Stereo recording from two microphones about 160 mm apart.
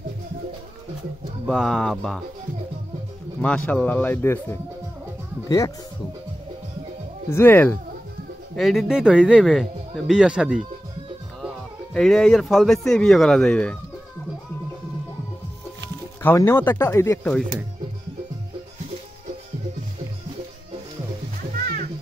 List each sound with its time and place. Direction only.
1.5 s speech: 5° left (ahead or behind)
3.3 s speech: 10° left (ahead or behind)
7.2 s speech: 15° left (ahead or behind)
8.5 s speech: centre (ahead or behind)
16.2 s speech: 15° left (ahead or behind)
21.5 s music: 60° right (ahead or behind)